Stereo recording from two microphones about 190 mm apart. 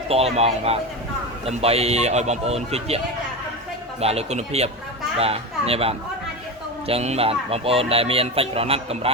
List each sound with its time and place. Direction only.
0.1 s speech: 35° right (ahead or behind)
4.0 s speech: 35° right (ahead or behind)